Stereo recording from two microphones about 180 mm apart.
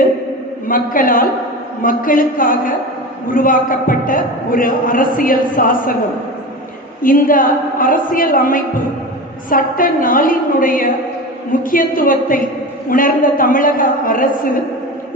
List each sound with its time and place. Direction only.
0.7 s a man's voice: 50° left (ahead or behind)
7.0 s a man's voice: 50° left (ahead or behind)